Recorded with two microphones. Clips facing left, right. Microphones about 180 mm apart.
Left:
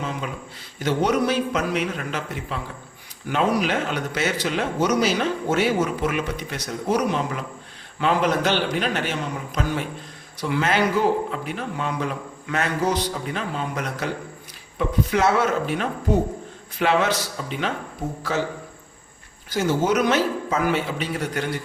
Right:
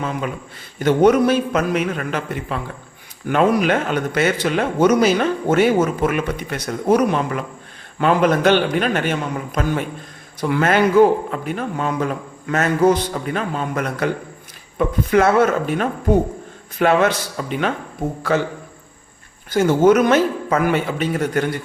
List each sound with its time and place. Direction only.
0.8 s a man's voice: 55° right (ahead or behind)
19.5 s a man's voice: 55° right (ahead or behind)